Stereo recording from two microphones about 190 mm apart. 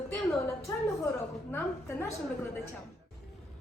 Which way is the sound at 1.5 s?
10° left (ahead or behind).